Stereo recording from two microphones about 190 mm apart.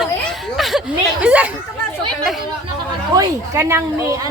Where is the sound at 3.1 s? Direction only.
15° right (ahead or behind).